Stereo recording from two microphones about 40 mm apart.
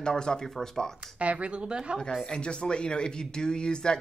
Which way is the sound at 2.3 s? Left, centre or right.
Left.